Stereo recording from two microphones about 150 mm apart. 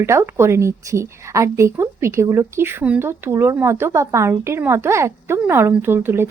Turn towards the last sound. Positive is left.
turn(degrees=-15)  # may be behind; listen again after turning